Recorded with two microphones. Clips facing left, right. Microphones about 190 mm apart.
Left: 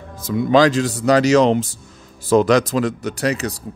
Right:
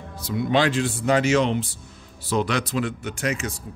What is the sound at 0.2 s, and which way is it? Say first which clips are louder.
Speech: left 7 dB; 40° left (ahead or behind).